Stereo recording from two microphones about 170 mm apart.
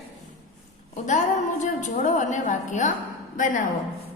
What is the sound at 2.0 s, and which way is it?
A woman's voice, 45° left (ahead or behind).